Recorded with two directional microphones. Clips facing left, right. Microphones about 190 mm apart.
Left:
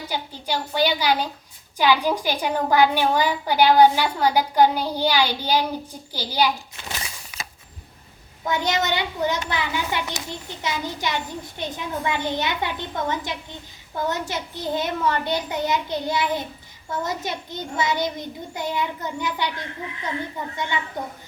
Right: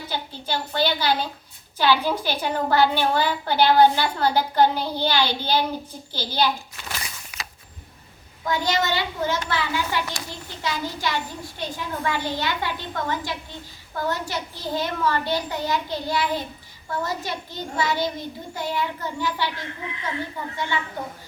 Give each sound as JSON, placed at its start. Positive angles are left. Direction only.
{"t": 0.1, "sound": "a woman's voice", "side_deg": 15}
{"t": 6.1, "sound": "a sound", "side_deg": 10}
{"t": 8.4, "sound": "a child's voice", "side_deg": 20}